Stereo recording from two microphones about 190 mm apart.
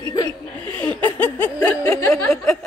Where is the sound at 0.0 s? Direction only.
20° left (ahead or behind).